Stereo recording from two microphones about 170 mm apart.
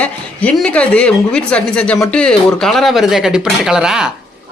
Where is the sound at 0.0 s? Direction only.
5° left (ahead or behind).